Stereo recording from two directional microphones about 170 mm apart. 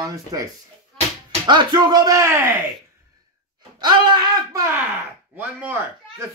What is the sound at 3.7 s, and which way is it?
Speech, 25° right (ahead or behind).